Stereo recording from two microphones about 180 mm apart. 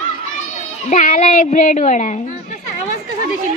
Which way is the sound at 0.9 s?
45° left (ahead or behind).